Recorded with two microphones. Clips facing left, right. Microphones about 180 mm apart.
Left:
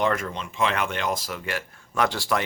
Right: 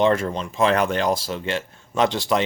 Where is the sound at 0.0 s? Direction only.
30° right (ahead or behind).